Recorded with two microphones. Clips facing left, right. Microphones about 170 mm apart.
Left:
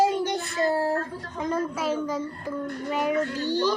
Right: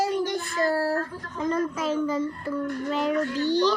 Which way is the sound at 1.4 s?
10° left (ahead or behind).